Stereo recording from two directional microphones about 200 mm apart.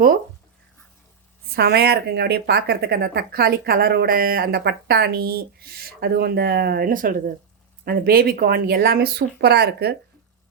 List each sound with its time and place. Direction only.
1.5 s speech: 55° right (ahead or behind)